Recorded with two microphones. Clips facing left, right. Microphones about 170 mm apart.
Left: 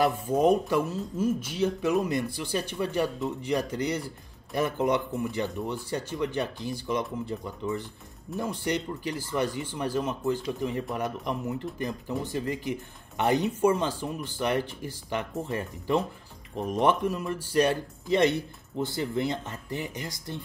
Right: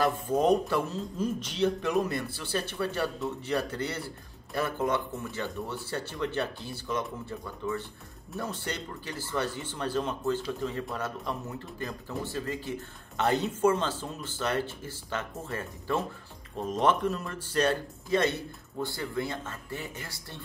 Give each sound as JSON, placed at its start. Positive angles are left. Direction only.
{"t": 0.0, "sound": "speech", "side_deg": 10}
{"t": 8.3, "sound": "speech", "side_deg": 0}
{"t": 8.6, "sound": "speech", "side_deg": 15}